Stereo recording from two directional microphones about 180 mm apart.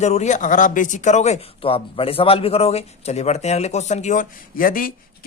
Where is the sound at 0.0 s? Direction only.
40° left (ahead or behind).